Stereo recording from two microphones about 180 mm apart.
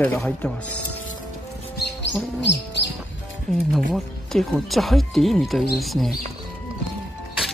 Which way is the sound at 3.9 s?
Centre (ahead or behind).